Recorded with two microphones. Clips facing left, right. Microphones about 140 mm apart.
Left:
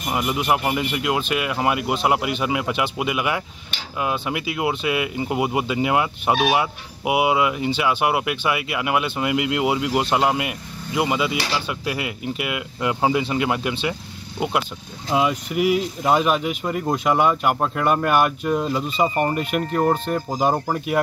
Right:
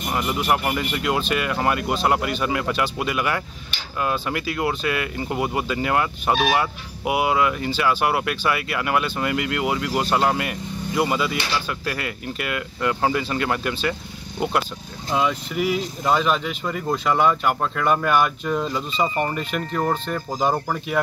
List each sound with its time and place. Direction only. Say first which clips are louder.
0.1 s speech: left 1 dB; 15° left (ahead or behind)
15.0 s speech: left 2 dB; 5° left (ahead or behind)